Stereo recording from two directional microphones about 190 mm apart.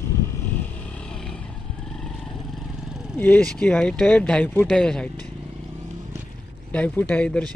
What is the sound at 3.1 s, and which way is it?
Speech, 10° left (ahead or behind).